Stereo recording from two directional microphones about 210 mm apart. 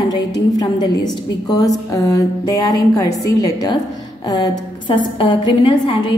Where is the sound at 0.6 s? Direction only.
20° left (ahead or behind).